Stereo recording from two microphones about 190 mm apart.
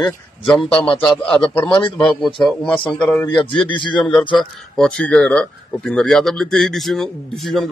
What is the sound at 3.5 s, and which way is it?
Speech, 25° left (ahead or behind).